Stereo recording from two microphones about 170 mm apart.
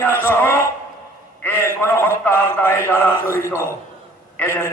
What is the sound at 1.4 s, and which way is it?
A man's voice, 15° left (ahead or behind).